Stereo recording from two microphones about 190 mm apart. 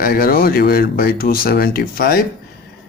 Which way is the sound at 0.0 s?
50° left (ahead or behind).